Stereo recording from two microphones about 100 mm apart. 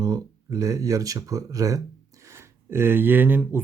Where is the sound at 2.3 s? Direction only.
25° right (ahead or behind).